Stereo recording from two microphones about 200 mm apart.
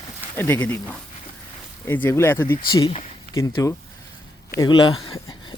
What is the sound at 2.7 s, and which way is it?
A man's voice, 25° left (ahead or behind).